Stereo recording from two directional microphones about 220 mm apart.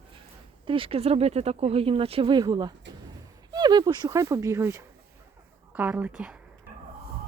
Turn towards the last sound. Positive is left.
turn(degrees=-5)  # may be behind; listen again after turning